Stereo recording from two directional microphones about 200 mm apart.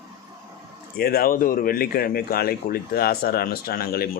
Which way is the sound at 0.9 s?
50° left (ahead or behind).